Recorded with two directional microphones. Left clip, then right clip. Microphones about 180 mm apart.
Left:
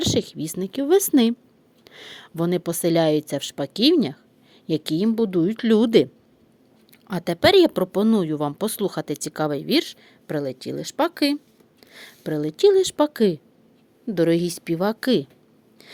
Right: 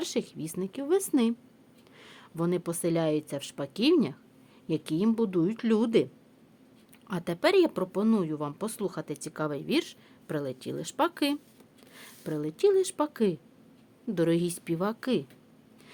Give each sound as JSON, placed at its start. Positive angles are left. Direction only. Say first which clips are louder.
{"t": 0.0, "sound": "a woman's voice", "louder": "left 9 dB", "side_deg": 25}
{"t": 7.1, "sound": "a woman's voice", "louder": "left 9 dB", "side_deg": 25}